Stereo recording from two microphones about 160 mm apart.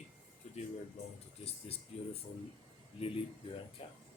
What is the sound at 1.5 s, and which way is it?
Speech, 40° left (ahead or behind).